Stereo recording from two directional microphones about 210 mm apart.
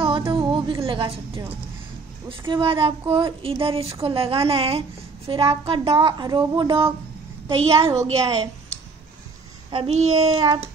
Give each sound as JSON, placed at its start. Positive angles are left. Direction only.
{"t": 0.3, "sound": "music", "side_deg": -20}
{"t": 2.2, "sound": "a woman's voice", "side_deg": -25}
{"t": 7.8, "sound": "a woman's voice", "side_deg": -15}
{"t": 9.7, "sound": "child singing", "side_deg": -30}
{"t": 10.1, "sound": "speech", "side_deg": -25}